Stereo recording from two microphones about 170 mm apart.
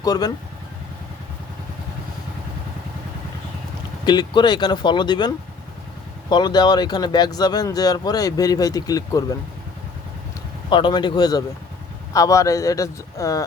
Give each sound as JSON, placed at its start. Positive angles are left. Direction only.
{"t": 0.0, "sound": "speech", "side_deg": 20}
{"t": 4.0, "sound": "speech", "side_deg": 25}
{"t": 10.7, "sound": "speech", "side_deg": 30}